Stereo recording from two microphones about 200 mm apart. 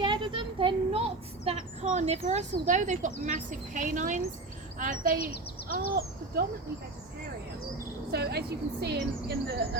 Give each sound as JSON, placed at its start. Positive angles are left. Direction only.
{"t": 0.0, "sound": "a sound", "side_deg": -25}
{"t": 4.8, "sound": "speech", "side_deg": -40}
{"t": 8.1, "sound": "speech", "side_deg": -55}